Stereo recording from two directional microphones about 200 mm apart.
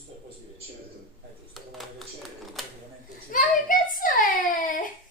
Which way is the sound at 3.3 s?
45° left (ahead or behind).